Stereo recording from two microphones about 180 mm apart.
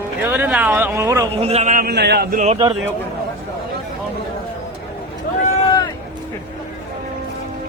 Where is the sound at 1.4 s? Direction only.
35° right (ahead or behind); by 2.2 s 65° right (ahead or behind).